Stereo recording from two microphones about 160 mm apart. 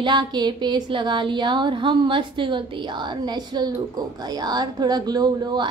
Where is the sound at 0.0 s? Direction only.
30° right (ahead or behind).